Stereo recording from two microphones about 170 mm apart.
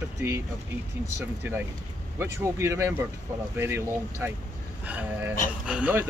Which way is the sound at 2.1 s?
15° right (ahead or behind).